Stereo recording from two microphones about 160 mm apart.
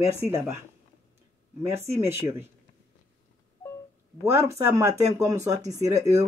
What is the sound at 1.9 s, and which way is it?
Speech, 15° right (ahead or behind).